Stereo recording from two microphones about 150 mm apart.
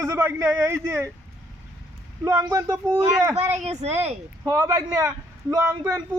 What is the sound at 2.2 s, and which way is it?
A man's voice, 20° right (ahead or behind).